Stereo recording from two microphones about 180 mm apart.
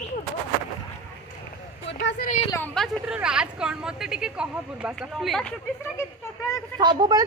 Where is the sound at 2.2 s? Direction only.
45° left (ahead or behind).